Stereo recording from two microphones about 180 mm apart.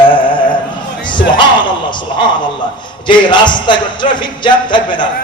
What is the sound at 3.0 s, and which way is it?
Music, 25° left (ahead or behind).